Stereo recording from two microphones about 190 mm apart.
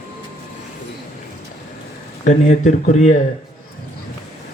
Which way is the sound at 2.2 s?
35° left (ahead or behind).